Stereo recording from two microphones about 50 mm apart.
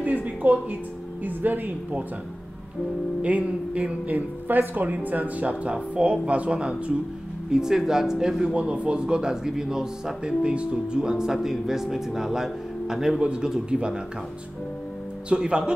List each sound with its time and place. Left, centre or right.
0.0 s music: right
1.2 s speech: right
3.2 s speech: right
4.1 s speech: right; by 8.5 s centre
8.5 s speech: right
15.2 s speech: right